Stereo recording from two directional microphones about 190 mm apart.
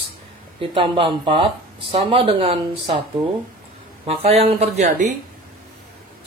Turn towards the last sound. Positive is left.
turn(degrees=-35)  # may be behind; listen again after turning